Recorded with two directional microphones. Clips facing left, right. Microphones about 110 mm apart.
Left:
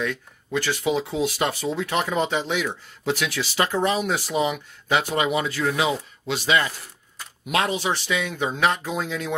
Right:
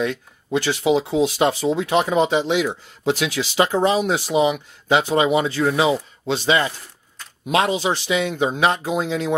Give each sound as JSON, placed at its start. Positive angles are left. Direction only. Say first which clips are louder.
{"t": 0.0, "sound": "speech", "louder": "right 4 dB", "side_deg": -20}